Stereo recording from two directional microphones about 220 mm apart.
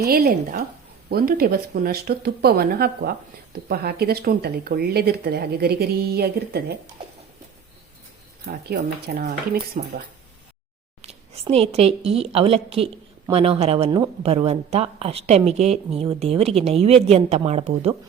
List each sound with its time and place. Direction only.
0.0 s speech: 45° right (ahead or behind)
8.4 s speech: 50° right (ahead or behind)
11.0 s speech: 30° right (ahead or behind)